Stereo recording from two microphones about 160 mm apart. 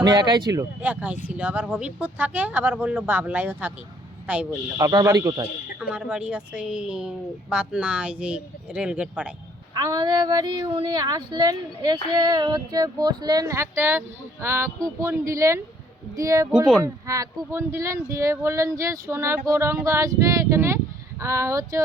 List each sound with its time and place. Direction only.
0.0 s speech: 25° right (ahead or behind)
0.8 s speech: 10° right (ahead or behind)
4.8 s speech: 20° right (ahead or behind)
5.8 s a woman's voice: 5° right (ahead or behind)
9.7 s speech: 25° right (ahead or behind)
16.5 s a woman's voice: 5° right (ahead or behind)
16.8 s speech: 20° right (ahead or behind)